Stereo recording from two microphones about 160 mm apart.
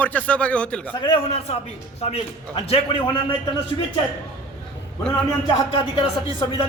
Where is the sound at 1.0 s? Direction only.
35° left (ahead or behind).